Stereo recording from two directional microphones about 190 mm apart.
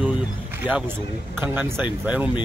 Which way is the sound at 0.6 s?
5° right (ahead or behind).